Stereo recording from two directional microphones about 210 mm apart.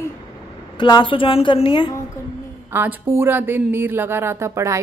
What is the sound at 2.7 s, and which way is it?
Speech, 10° right (ahead or behind).